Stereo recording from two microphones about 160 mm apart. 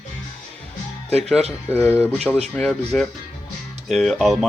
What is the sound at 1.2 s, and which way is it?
Speech, centre (ahead or behind).